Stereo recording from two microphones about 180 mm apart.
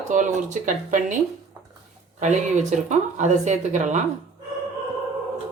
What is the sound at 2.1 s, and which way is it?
Speech, 40° right (ahead or behind).